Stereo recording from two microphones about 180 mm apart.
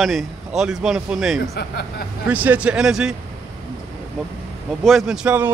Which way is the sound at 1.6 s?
60° left (ahead or behind).